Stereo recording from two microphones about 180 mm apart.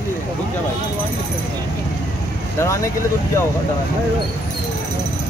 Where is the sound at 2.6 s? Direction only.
15° left (ahead or behind).